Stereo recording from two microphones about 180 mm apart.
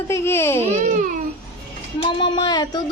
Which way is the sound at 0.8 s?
45° right (ahead or behind).